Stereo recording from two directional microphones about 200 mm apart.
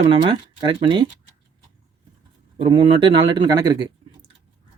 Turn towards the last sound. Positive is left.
turn(degrees=-20)  # may be behind; listen again after turning